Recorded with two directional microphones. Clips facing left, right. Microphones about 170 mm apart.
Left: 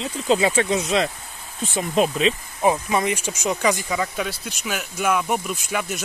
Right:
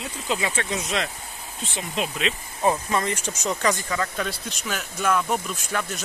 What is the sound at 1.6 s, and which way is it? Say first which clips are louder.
Speech: left 8 dB; 45° left (ahead or behind).